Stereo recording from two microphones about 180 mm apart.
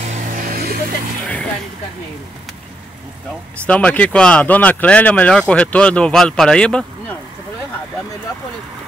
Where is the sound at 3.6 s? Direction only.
5° left (ahead or behind).